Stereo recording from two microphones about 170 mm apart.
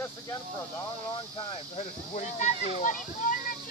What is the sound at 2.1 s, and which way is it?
Speech, 45° left (ahead or behind).